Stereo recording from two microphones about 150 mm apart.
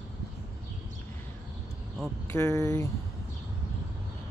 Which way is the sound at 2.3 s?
20° left (ahead or behind).